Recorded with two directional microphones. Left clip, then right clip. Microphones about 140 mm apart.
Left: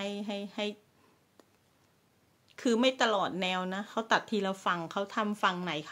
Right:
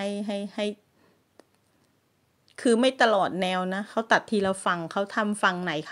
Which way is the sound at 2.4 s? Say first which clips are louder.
Right 6 dB; 45° right (ahead or behind).